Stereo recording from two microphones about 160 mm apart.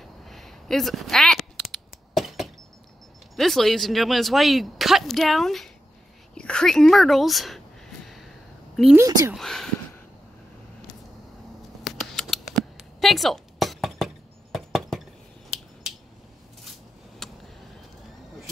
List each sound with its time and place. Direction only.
0.0 s a sound: centre (ahead or behind)
3.3 s speech: centre (ahead or behind)
6.3 s a sound: 5° left (ahead or behind)
8.9 s speech: 20° right (ahead or behind)
9.3 s speech: centre (ahead or behind)
11.8 s scissors: centre (ahead or behind)
17.2 s vehicle: 5° left (ahead or behind)